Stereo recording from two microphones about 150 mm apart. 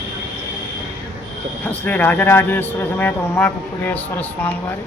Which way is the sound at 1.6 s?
10° left (ahead or behind).